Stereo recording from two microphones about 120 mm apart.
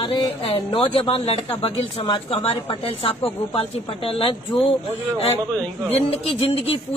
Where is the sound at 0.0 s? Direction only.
45° left (ahead or behind).